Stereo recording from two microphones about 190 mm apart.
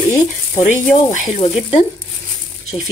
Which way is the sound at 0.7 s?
35° left (ahead or behind).